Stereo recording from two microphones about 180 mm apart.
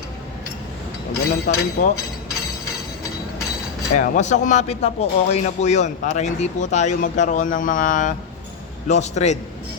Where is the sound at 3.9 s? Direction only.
45° left (ahead or behind).